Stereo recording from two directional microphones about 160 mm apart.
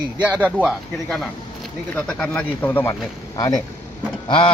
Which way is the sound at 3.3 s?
25° left (ahead or behind).